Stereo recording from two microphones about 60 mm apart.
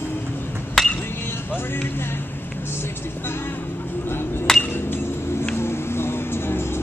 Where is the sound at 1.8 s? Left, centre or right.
Left.